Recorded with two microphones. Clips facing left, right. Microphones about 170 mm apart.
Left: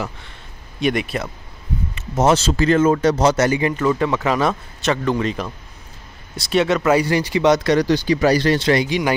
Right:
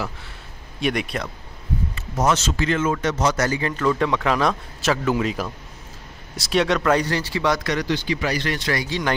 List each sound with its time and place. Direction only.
0.7 s speech: centre (ahead or behind)
2.0 s a man's voice: 25° left (ahead or behind)